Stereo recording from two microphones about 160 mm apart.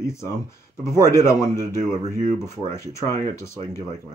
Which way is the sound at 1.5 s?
25° right (ahead or behind).